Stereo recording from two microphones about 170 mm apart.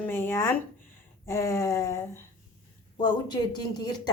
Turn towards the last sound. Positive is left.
turn(degrees=25)  # may be behind; listen again after turning